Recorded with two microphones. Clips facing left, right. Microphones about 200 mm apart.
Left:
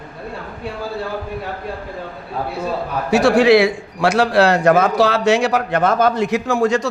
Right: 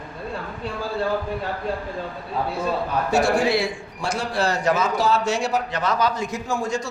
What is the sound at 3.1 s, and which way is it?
A man's voice, 75° left (ahead or behind).